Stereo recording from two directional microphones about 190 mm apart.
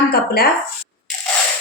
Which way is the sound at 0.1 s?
55° left (ahead or behind).